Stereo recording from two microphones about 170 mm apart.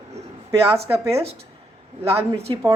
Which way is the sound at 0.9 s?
15° right (ahead or behind).